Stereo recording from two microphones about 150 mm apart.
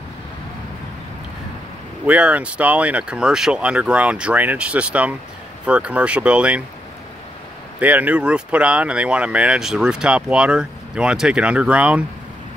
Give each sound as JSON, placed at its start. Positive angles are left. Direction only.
{"t": 2.0, "sound": "speech", "side_deg": -10}
{"t": 7.8, "sound": "speech", "side_deg": -10}